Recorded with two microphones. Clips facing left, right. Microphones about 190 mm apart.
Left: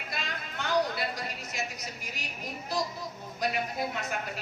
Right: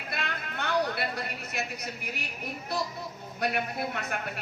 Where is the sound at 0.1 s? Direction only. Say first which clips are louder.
Right 3 dB; 60° right (ahead or behind).